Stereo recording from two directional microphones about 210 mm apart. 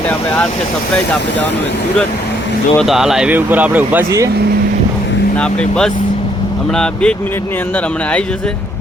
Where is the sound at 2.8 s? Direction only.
Centre (ahead or behind).